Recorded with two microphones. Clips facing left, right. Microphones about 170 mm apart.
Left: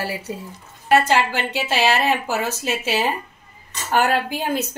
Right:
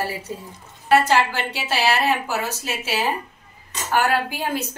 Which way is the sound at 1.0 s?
20° left (ahead or behind).